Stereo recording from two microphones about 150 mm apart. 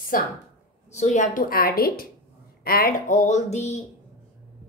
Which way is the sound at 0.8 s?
50° left (ahead or behind).